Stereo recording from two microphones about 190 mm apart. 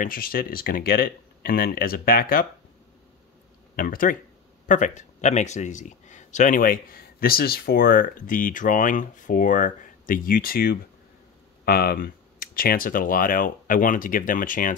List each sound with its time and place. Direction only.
0.0 s a man's voice: 50° left (ahead or behind)
3.7 s a man's voice: 50° left (ahead or behind)